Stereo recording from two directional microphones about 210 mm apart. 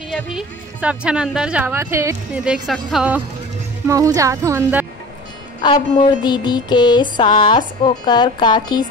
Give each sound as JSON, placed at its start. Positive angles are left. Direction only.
{"t": 0.1, "sound": "a woman's voice", "side_deg": 0}
{"t": 3.8, "sound": "speech", "side_deg": -15}
{"t": 5.6, "sound": "a sound", "side_deg": 20}